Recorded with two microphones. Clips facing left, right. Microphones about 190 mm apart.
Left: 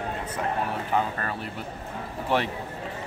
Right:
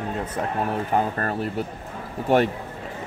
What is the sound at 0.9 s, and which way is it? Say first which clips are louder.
Speech: right 3 dB; 45° right (ahead or behind).